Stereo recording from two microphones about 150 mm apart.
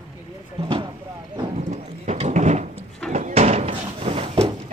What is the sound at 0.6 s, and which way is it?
Vehicle, 35° right (ahead or behind).